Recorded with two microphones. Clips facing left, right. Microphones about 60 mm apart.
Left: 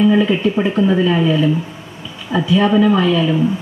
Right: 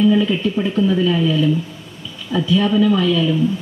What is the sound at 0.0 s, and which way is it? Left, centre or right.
Speech, left.